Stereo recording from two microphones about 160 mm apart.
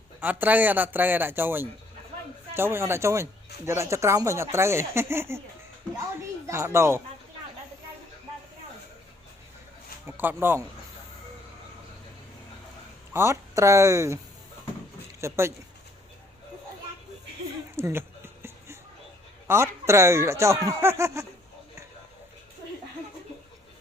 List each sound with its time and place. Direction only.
0.2 s speech: 10° right (ahead or behind)
6.5 s speech: 20° right (ahead or behind)
10.2 s speech: 15° right (ahead or behind)
13.1 s speech: 15° right (ahead or behind)
15.2 s speech: 15° right (ahead or behind)
17.7 s speech: 15° right (ahead or behind)
19.5 s speech: 15° right (ahead or behind)